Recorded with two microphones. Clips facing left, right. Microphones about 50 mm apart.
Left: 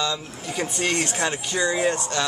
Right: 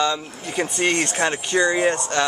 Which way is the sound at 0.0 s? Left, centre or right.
Right.